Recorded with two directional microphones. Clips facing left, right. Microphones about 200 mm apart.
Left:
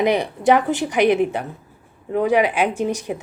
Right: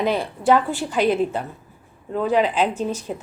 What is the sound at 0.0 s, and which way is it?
Speech, 15° left (ahead or behind).